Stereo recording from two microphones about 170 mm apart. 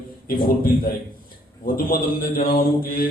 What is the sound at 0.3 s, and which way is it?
A man's voice, 60° left (ahead or behind).